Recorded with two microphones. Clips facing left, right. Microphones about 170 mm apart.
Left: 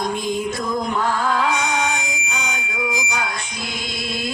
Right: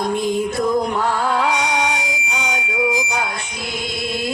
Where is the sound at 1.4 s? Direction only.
70° right (ahead or behind).